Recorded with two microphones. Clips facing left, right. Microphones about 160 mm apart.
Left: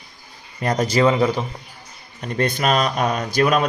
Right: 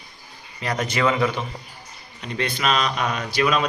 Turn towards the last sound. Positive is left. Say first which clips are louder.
# left 3 dB
turn(degrees=50)  # may be behind; listen again after turning